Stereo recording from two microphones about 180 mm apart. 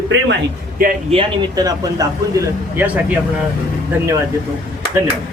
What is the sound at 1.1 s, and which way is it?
Speech, 25° right (ahead or behind).